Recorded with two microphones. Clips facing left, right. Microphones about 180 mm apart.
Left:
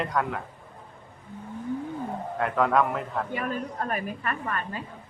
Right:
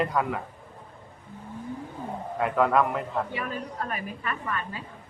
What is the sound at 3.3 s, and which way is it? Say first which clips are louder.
A woman's voice: left 2 dB; 45° left (ahead or behind).